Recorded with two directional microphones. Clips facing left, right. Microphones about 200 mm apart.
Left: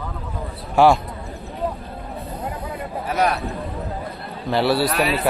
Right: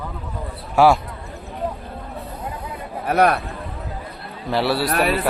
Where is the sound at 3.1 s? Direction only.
60° right (ahead or behind).